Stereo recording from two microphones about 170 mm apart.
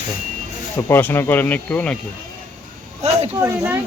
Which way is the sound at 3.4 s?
15° right (ahead or behind).